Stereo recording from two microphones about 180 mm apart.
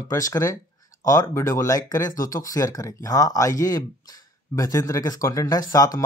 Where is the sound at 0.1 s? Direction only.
20° left (ahead or behind).